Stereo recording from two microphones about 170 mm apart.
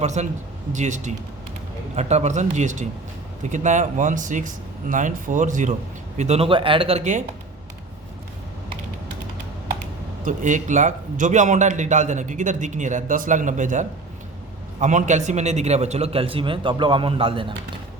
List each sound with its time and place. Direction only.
0.0 s a man's voice: 40° right (ahead or behind)
10.2 s a man's voice: 45° right (ahead or behind); by 17.5 s 30° right (ahead or behind)